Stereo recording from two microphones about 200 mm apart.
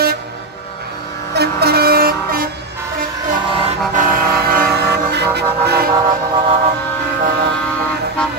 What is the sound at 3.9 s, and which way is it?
Vehicle, 45° right (ahead or behind).